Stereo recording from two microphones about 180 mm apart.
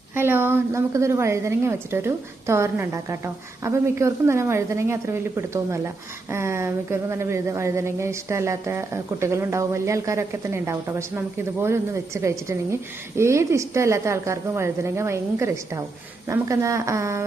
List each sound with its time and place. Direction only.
0.1 s speech: 10° right (ahead or behind)